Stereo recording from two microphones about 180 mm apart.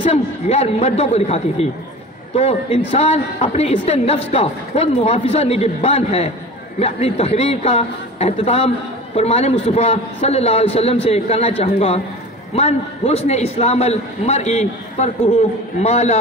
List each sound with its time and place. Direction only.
0.0 s a man's voice: 35° left (ahead or behind)